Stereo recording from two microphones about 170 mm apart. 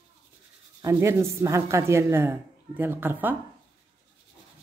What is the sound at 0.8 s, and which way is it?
Speech, 15° right (ahead or behind).